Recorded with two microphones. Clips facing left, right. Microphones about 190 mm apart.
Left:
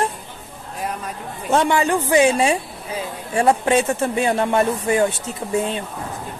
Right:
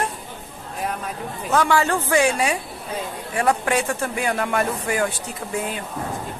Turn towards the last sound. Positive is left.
turn(degrees=25)  # may be behind; listen again after turning